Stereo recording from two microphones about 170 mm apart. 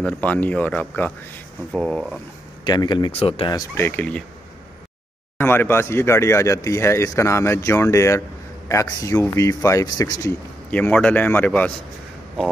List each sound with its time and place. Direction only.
0.0 s speech: 10° left (ahead or behind)
2.6 s speech: 25° left (ahead or behind)
3.5 s speech: 15° left (ahead or behind)
5.4 s speech: 10° left (ahead or behind)
10.7 s speech: 10° left (ahead or behind)